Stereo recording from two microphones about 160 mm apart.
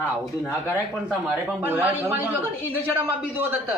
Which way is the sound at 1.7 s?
15° right (ahead or behind).